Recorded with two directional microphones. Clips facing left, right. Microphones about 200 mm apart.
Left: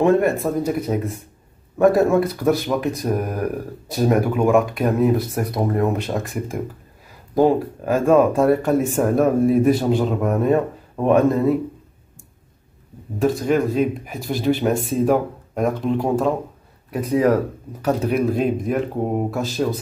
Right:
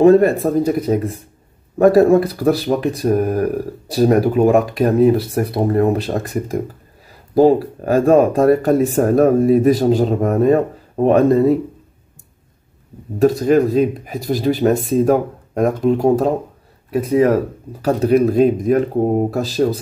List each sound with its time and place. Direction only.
0.0 s speech: 35° right (ahead or behind)
13.2 s speech: 40° right (ahead or behind)
16.9 s speech: 25° right (ahead or behind)
17.8 s speech: 40° right (ahead or behind)